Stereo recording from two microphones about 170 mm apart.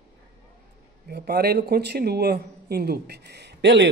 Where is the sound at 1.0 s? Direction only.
70° right (ahead or behind).